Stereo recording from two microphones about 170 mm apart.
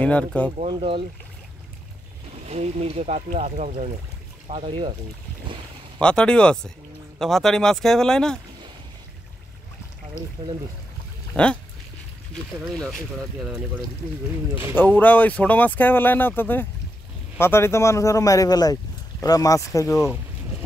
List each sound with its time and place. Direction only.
0.0 s speech: 5° left (ahead or behind)
0.6 s speech: 35° right (ahead or behind)
2.3 s speech: 40° right (ahead or behind)
4.5 s speech: 35° right (ahead or behind)
5.9 s speech: 5° left (ahead or behind)
11.4 s speech: 5° left (ahead or behind)
13.4 s speech: centre (ahead or behind)
15.0 s speech: 10° left (ahead or behind)